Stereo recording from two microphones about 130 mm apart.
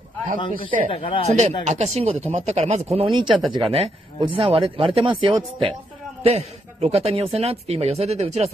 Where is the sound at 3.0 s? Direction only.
40° right (ahead or behind).